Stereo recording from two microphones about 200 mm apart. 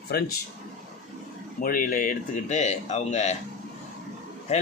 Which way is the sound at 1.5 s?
45° left (ahead or behind).